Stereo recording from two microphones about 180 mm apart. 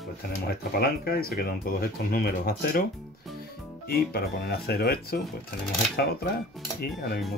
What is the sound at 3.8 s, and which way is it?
Speech, 60° left (ahead or behind).